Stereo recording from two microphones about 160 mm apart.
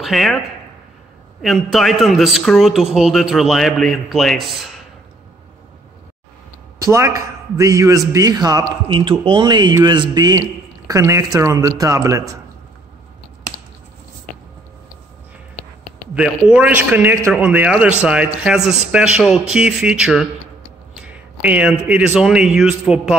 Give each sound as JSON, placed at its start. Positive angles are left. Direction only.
{"t": 0.0, "sound": "speech", "side_deg": 0}
{"t": 1.4, "sound": "a man's voice", "side_deg": 0}
{"t": 6.9, "sound": "a man's voice", "side_deg": -20}
{"t": 16.2, "sound": "a man's voice", "side_deg": -5}